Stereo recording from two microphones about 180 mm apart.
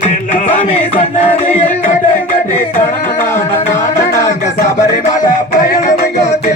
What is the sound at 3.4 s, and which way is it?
Music, 40° left (ahead or behind).